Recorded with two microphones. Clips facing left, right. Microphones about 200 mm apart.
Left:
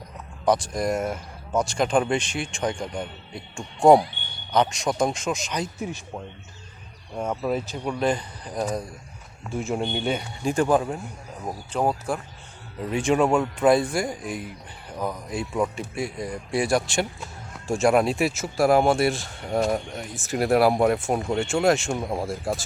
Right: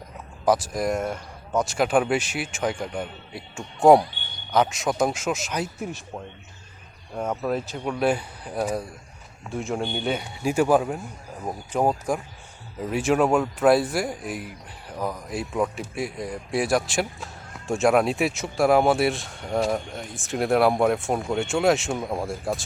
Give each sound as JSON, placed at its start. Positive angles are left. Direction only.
{"t": 0.4, "sound": "speech", "side_deg": -5}